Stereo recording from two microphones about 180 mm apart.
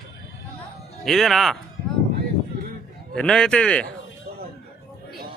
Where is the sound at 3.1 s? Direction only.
5° left (ahead or behind).